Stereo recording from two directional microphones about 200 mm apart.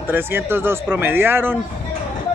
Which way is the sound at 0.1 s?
10° right (ahead or behind).